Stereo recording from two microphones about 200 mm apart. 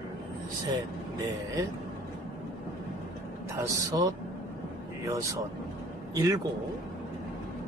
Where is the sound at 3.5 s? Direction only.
15° right (ahead or behind).